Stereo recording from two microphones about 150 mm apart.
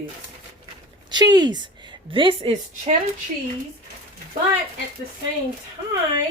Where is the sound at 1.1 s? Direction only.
25° right (ahead or behind); by 2.9 s 45° right (ahead or behind).